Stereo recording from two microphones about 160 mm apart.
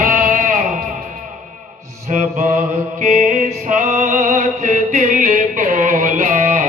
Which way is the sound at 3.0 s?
55° right (ahead or behind).